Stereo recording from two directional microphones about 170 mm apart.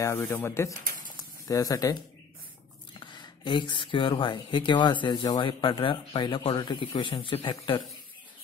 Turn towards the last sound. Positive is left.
turn(degrees=30)  # may be behind; listen again after turning